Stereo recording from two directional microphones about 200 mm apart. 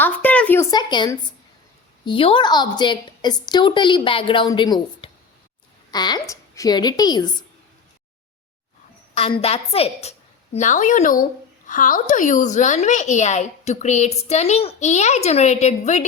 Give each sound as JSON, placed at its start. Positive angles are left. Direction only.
{"t": 0.0, "sound": "a woman's voice", "side_deg": 10}
{"t": 9.1, "sound": "a woman's voice", "side_deg": 30}